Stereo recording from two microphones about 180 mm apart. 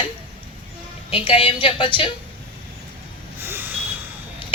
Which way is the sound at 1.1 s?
30° left (ahead or behind).